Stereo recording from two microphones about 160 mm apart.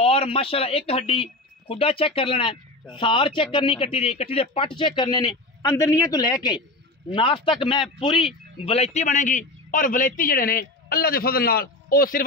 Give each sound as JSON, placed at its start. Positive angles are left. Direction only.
{"t": 0.0, "sound": "a man's voice", "side_deg": 35}